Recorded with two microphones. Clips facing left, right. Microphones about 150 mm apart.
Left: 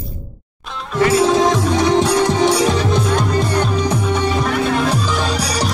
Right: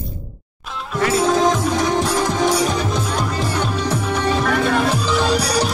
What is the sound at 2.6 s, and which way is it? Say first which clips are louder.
Music: left 4 dB; centre (ahead or behind).